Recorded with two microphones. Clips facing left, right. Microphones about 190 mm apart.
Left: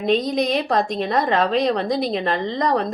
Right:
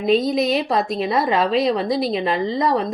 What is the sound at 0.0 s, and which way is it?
A woman's voice, 5° right (ahead or behind).